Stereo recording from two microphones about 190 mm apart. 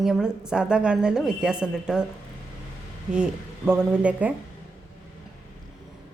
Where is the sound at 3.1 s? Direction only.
5° right (ahead or behind).